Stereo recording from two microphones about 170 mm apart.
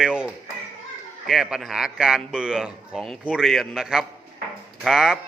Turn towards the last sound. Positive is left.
turn(degrees=0)  # may be behind; listen again after turning